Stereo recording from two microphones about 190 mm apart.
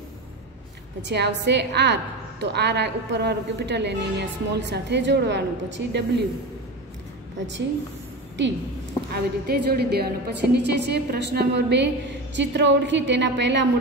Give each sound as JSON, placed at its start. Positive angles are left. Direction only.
{"t": 1.0, "sound": "a woman's voice", "side_deg": -65}
{"t": 9.1, "sound": "a woman's voice", "side_deg": -55}